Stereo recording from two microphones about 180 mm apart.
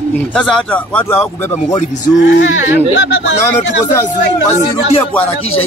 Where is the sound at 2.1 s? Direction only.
85° left.